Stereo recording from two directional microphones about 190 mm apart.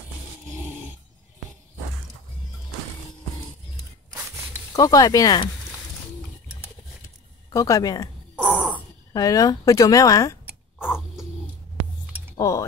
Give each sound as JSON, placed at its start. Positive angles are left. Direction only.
{"t": 4.7, "sound": "a woman's voice", "side_deg": 20}
{"t": 7.4, "sound": "speech", "side_deg": 15}
{"t": 8.4, "sound": "a sound", "side_deg": -5}
{"t": 9.1, "sound": "a woman's voice", "side_deg": 20}
{"t": 10.8, "sound": "dog", "side_deg": -5}
{"t": 12.4, "sound": "speech", "side_deg": 15}